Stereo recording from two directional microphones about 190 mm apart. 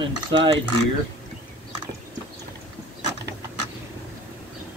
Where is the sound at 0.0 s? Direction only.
25° right (ahead or behind).